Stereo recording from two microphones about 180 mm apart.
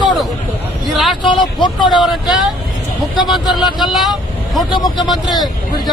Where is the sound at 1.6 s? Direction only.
25° left (ahead or behind).